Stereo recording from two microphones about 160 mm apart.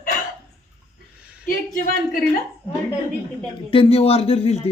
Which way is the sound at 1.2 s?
5° right (ahead or behind).